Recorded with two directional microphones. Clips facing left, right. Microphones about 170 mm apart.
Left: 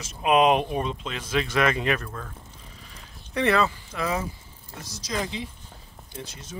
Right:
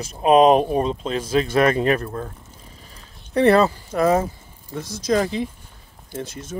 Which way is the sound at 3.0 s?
35° right (ahead or behind).